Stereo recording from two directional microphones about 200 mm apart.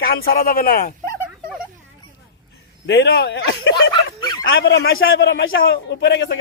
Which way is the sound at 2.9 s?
65° left (ahead or behind).